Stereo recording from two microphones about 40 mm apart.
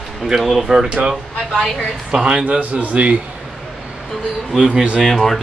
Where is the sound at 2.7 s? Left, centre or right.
Right.